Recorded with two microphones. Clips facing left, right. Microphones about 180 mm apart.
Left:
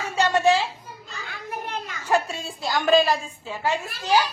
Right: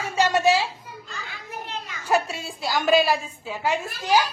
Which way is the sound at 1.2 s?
55° left (ahead or behind).